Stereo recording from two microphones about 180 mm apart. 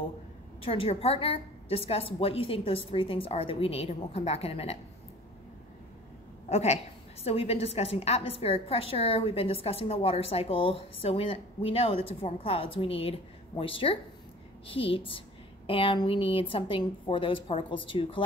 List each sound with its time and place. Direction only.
0.6 s a woman's voice: 30° left (ahead or behind)
6.5 s a woman's voice: 35° left (ahead or behind)